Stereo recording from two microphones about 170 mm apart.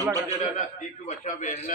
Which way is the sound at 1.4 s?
45° left (ahead or behind).